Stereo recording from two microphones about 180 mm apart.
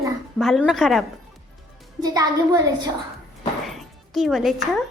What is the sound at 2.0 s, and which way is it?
Speech, 20° right (ahead or behind).